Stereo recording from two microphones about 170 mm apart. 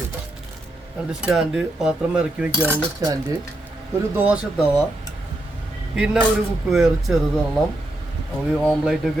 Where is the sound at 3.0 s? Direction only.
25° right (ahead or behind).